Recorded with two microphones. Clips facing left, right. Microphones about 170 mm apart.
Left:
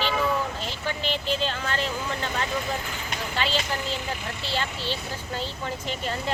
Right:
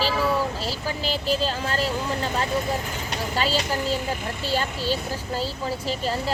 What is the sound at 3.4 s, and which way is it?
Speech, 40° right (ahead or behind).